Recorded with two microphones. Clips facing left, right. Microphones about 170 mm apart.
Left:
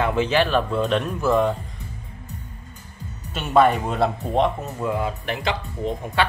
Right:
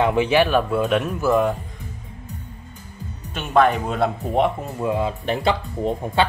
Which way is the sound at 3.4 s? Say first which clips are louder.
Even; centre (ahead or behind).